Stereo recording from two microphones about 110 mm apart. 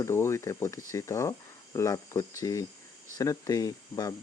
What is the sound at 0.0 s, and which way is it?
Speech, 25° left (ahead or behind).